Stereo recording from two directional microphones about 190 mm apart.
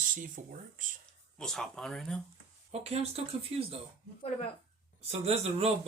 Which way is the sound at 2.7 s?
35° right (ahead or behind).